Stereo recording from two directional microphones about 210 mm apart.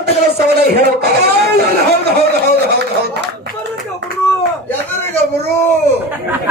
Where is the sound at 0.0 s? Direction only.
50° right (ahead or behind).